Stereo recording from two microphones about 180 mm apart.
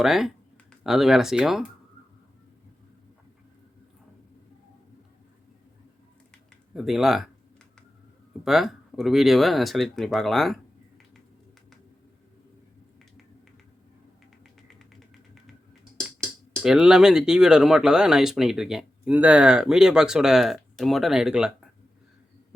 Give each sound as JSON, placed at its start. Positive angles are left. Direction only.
{"t": 0.0, "sound": "speech", "side_deg": 0}
{"t": 6.7, "sound": "speech", "side_deg": 0}
{"t": 8.4, "sound": "speech", "side_deg": 0}
{"t": 16.2, "sound": "speech", "side_deg": -5}